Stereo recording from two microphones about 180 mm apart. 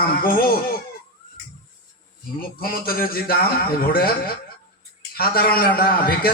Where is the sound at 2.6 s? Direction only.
55° left (ahead or behind).